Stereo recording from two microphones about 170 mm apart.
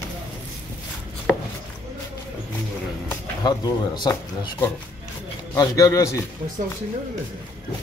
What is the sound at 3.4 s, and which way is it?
Speech, 25° left (ahead or behind).